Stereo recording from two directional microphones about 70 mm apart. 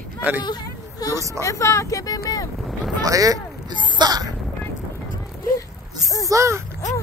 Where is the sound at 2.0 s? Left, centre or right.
Left.